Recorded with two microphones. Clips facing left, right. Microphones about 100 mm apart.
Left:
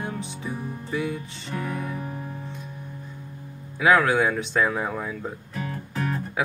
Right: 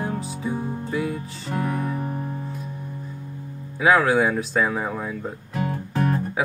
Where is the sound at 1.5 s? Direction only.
30° right (ahead or behind).